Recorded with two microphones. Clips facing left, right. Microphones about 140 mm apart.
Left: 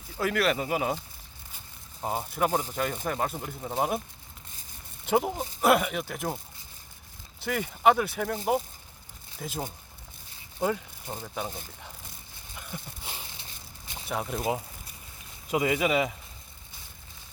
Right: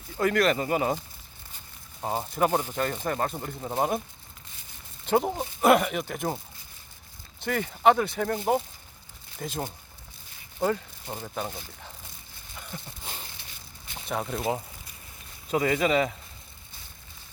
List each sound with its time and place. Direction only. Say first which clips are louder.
0.2 s speech: right 3 dB; 5° left (ahead or behind)
2.0 s speech: right 2 dB; centre (ahead or behind)
3.6 s speech: right 1 dB; 10° right (ahead or behind)
5.0 s speech: right 1 dB; 5° left (ahead or behind)
7.4 s speech: right 1 dB; 5° left (ahead or behind)
10.6 s a sound: right 2 dB; 5° left (ahead or behind)
11.1 s speech: right 1 dB; centre (ahead or behind)
12.5 s a sound: even; 5° left (ahead or behind)
14.1 s speech: right 1 dB; 5° left (ahead or behind)